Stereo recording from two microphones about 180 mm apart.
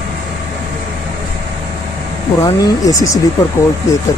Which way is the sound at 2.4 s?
20° left (ahead or behind).